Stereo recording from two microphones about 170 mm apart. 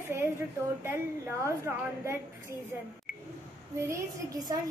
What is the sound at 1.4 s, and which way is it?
Speech, 15° right (ahead or behind).